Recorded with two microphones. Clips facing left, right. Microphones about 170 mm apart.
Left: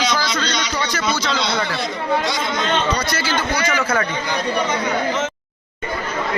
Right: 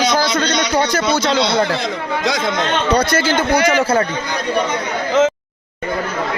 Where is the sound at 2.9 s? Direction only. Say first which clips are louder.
Right 7 dB; 50° right (ahead or behind).